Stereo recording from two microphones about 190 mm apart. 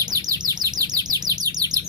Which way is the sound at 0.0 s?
20° right (ahead or behind).